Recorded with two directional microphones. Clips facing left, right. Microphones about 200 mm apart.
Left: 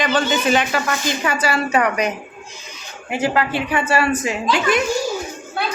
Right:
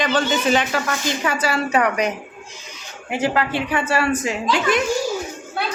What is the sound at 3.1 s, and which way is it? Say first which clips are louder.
A woman's voice: left 1 dB; 5° left (ahead or behind).